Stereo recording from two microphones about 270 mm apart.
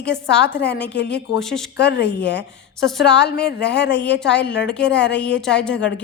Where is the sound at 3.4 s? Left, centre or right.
Left.